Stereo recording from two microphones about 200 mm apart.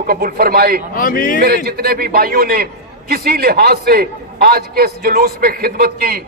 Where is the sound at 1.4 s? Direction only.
50° right (ahead or behind).